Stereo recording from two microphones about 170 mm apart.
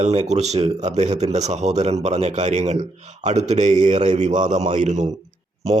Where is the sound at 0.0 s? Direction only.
40° right (ahead or behind).